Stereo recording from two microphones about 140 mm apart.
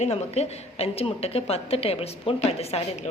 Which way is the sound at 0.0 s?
50° left (ahead or behind).